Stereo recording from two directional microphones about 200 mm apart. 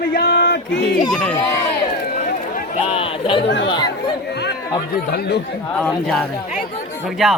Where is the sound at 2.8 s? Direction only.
30° left (ahead or behind).